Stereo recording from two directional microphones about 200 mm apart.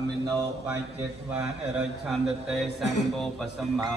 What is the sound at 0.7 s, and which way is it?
A man's voice, 10° right (ahead or behind).